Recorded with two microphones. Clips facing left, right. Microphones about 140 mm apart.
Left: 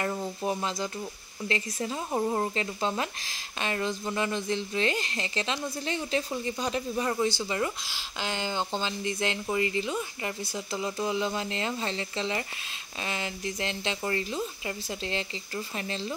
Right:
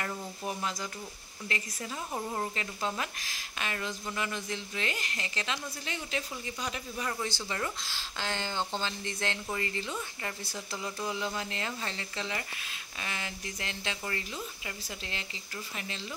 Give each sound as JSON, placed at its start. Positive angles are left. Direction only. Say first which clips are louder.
{"t": 0.4, "sound": "speech", "louder": "left 4 dB", "side_deg": 30}
{"t": 7.3, "sound": "speech", "louder": "left 5 dB", "side_deg": 15}